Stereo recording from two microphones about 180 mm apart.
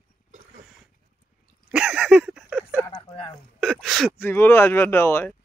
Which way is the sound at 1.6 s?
5° right (ahead or behind).